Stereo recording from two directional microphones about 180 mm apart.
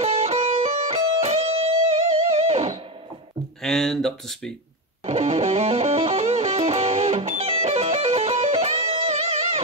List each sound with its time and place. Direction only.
0.0 s music: 35° right (ahead or behind)
3.6 s speech: centre (ahead or behind)
5.0 s music: 35° right (ahead or behind)